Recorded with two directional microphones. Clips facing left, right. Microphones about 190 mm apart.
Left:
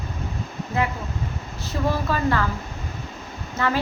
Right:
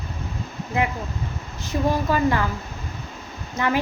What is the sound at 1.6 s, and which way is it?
Speech, 15° right (ahead or behind).